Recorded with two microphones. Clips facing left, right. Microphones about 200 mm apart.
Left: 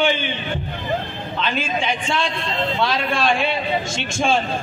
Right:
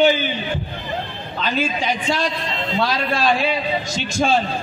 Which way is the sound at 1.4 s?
40° right (ahead or behind).